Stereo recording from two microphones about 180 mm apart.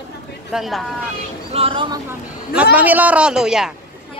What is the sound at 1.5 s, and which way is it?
Speech, 35° right (ahead or behind).